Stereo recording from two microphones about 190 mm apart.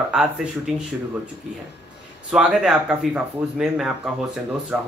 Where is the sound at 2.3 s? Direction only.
5° right (ahead or behind).